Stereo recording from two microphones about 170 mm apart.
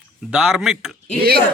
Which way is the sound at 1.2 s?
65° right (ahead or behind).